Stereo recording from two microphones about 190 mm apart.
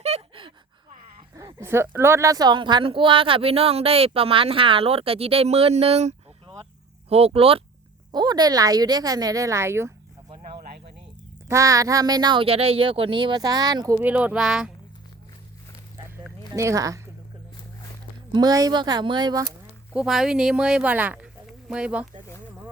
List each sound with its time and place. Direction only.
0.0 s a sound: 30° right (ahead or behind)
1.5 s speech: 15° right (ahead or behind)
10.2 s a sound: 25° right (ahead or behind)
11.4 s speech: 15° right (ahead or behind)
13.9 s speech: 10° right (ahead or behind)
16.6 s speech: 15° right (ahead or behind)
18.3 s speech: 20° right (ahead or behind)
19.9 s speech: 5° right (ahead or behind)